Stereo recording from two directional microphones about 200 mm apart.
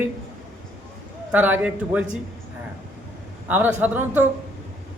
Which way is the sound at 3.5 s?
10° right (ahead or behind).